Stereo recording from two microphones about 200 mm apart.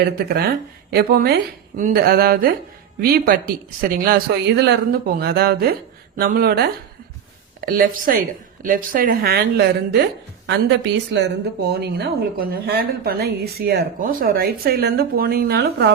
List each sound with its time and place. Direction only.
0.9 s a woman's voice: 50° right (ahead or behind)